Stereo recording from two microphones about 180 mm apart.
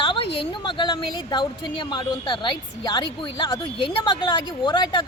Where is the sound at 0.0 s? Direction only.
30° left (ahead or behind).